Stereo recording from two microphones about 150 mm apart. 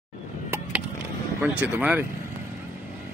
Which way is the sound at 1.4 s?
10° right (ahead or behind).